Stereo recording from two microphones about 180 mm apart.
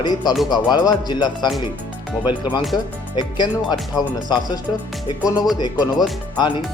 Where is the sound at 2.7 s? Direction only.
25° left (ahead or behind).